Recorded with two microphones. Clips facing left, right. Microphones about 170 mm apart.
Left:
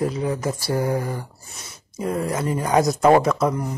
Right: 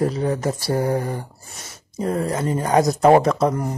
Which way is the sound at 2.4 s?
35° right (ahead or behind).